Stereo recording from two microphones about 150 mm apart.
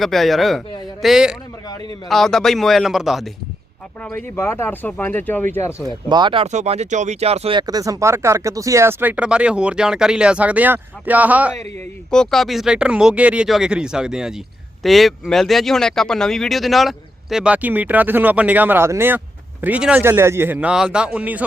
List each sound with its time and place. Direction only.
0.0 s speech: centre (ahead or behind)
4.1 s speech: 15° left (ahead or behind)
6.1 s speech: 30° right (ahead or behind)
6.5 s speech: 50° right (ahead or behind)
7.7 s speech: 25° right (ahead or behind)
12.1 s speech: 5° left (ahead or behind)